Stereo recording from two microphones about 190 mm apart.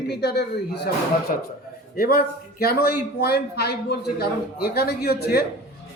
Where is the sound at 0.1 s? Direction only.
60° left (ahead or behind).